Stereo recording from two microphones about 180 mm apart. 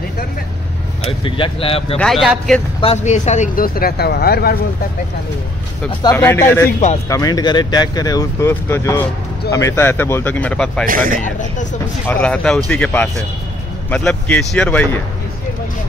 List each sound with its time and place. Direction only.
1.0 s speech: 30° left (ahead or behind)
2.0 s speech: centre (ahead or behind)
2.8 s speech: 35° left (ahead or behind); by 4.6 s 60° left (ahead or behind)
6.1 s speech: 10° left (ahead or behind)
10.9 s speech: 50° right (ahead or behind)
11.2 s speech: 45° left (ahead or behind)
12.1 s speech: 5° left (ahead or behind)